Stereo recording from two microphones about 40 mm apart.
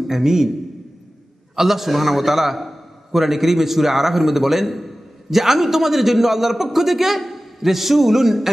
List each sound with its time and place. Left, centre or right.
0.0 s a man's voice: centre
1.5 s a man's voice: centre